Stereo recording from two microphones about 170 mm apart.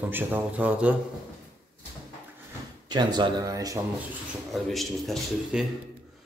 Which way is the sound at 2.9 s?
25° right (ahead or behind).